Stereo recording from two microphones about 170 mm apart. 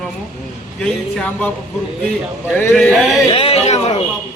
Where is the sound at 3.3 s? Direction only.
35° left (ahead or behind).